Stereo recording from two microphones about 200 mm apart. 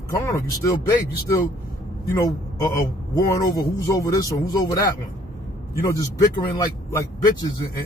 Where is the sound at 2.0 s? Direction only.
15° left (ahead or behind).